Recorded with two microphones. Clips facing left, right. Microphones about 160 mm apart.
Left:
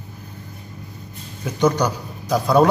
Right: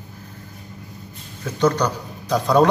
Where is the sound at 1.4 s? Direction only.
15° left (ahead or behind).